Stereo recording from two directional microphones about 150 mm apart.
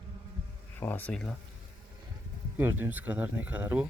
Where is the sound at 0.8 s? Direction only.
10° left (ahead or behind).